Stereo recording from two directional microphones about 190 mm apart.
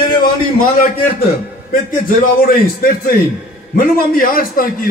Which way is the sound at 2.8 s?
50° left (ahead or behind).